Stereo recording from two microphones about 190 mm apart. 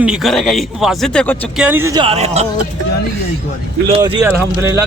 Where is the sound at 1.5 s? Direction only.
10° right (ahead or behind); by 2.5 s 35° right (ahead or behind).